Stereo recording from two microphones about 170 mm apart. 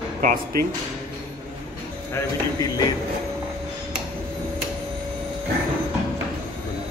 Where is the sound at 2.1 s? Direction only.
20° left (ahead or behind).